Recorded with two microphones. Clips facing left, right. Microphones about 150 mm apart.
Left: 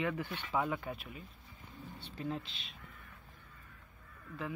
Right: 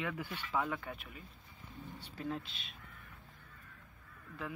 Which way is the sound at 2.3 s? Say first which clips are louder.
Even; centre (ahead or behind).